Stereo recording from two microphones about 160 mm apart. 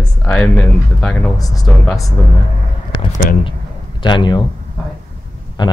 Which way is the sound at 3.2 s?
60° left (ahead or behind).